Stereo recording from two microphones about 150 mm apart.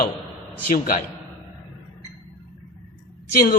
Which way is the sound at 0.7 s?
65° left (ahead or behind).